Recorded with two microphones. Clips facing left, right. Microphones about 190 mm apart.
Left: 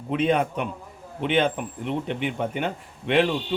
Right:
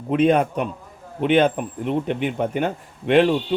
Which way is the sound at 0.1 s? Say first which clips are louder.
Right 5 dB; 45° right (ahead or behind).